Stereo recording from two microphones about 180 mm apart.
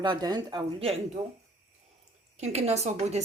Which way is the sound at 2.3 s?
35° right (ahead or behind).